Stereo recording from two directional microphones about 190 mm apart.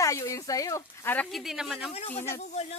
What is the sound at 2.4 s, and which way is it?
Speech, 35° left (ahead or behind).